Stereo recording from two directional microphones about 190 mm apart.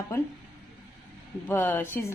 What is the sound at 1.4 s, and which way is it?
Speech, 10° left (ahead or behind).